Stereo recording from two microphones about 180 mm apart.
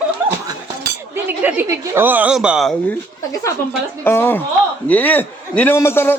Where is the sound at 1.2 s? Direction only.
10° right (ahead or behind).